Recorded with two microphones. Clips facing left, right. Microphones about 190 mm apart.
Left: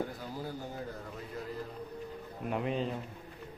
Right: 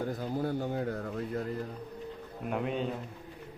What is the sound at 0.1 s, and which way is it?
Speech, 55° right (ahead or behind).